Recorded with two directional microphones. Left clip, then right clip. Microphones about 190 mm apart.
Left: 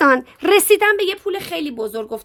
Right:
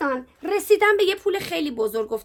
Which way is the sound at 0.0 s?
50° left (ahead or behind).